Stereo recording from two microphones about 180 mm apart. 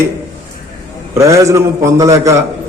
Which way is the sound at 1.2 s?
15° right (ahead or behind).